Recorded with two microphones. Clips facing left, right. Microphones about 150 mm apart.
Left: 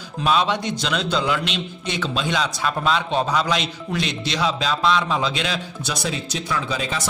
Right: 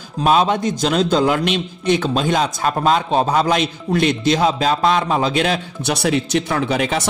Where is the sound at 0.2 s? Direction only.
45° right (ahead or behind).